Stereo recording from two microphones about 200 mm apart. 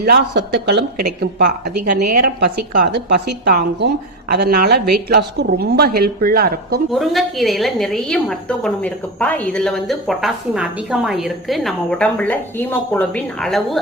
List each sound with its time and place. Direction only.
0.0 s speech: 55° right (ahead or behind)
7.0 s a woman's voice: centre (ahead or behind)